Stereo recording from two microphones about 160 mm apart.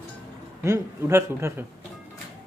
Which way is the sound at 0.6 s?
20° right (ahead or behind).